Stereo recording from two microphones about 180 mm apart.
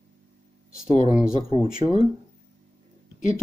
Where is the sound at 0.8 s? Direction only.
40° left (ahead or behind).